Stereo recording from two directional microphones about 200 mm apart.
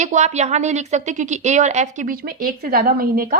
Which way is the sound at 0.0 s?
35° right (ahead or behind).